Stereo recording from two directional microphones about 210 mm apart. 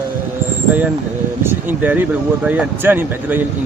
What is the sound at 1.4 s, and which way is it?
Speech, 10° right (ahead or behind).